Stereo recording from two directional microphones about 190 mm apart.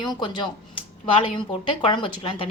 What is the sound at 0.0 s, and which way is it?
A woman's voice, 25° left (ahead or behind).